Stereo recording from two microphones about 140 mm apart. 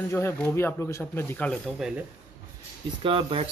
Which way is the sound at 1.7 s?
5° right (ahead or behind).